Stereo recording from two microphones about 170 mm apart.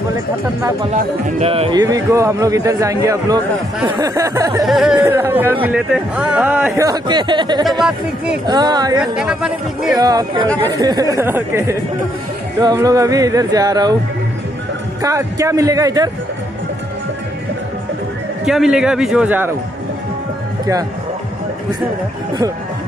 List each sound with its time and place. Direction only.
1.4 s speech: 35° right (ahead or behind)
1.8 s speech: 20° right (ahead or behind)
4.6 s speech: centre (ahead or behind)
6.8 s speech: 25° right (ahead or behind)
9.1 s a man's voice: 5° right (ahead or behind)
9.9 s speech: 25° right (ahead or behind)
15.0 s speech: 20° right (ahead or behind)
18.4 s a man's voice: centre (ahead or behind)